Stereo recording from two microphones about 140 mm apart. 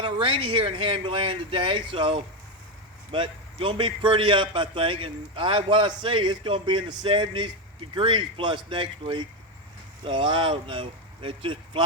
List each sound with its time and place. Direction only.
0.0 s a man's voice: 40° right (ahead or behind)